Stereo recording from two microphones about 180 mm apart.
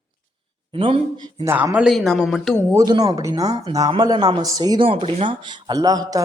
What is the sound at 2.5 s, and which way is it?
Speech, 20° right (ahead or behind).